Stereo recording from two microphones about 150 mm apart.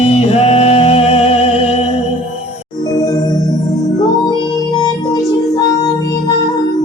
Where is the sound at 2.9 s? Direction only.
25° left (ahead or behind).